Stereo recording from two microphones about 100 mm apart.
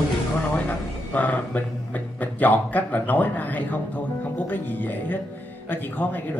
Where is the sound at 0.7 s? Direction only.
15° left (ahead or behind).